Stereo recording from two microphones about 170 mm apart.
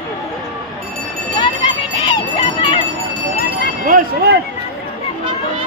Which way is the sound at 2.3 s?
35° left (ahead or behind).